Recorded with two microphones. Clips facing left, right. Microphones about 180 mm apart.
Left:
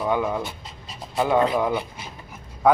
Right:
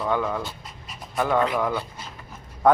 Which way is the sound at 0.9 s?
30° left (ahead or behind).